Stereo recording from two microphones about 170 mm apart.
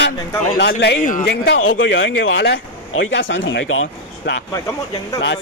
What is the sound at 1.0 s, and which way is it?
Speech, 50° left (ahead or behind).